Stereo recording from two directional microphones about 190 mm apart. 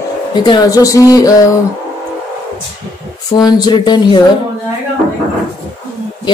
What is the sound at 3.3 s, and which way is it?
Speech, 20° left (ahead or behind).